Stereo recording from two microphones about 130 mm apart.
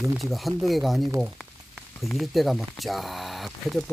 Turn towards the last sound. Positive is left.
turn(degrees=0)  # may be behind; listen again after turning